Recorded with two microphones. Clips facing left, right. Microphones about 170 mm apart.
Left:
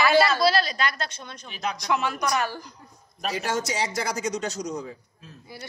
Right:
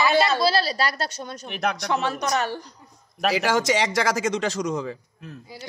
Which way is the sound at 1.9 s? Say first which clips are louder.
Left 2 dB; 30° right (ahead or behind).